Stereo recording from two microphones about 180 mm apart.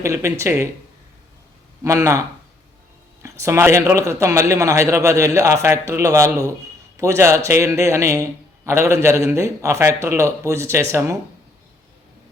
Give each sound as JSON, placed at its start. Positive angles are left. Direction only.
{"t": 0.0, "sound": "a man's voice", "side_deg": -15}
{"t": 1.8, "sound": "a man's voice", "side_deg": -15}
{"t": 3.2, "sound": "a man's voice", "side_deg": -15}